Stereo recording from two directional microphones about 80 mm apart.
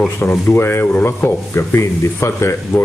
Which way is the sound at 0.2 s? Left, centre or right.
Left.